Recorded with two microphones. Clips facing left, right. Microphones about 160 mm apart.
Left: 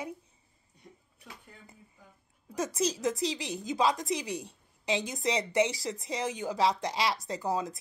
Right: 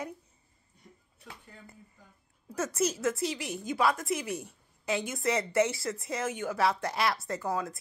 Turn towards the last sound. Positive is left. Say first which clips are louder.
# left 1 dB
turn(degrees=15)  # may be behind; listen again after turning